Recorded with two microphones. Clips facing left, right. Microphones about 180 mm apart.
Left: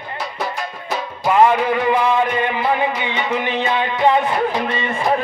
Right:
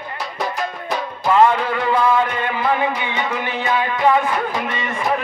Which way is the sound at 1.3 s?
15° left (ahead or behind).